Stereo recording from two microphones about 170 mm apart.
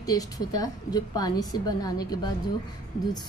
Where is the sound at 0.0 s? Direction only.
20° left (ahead or behind).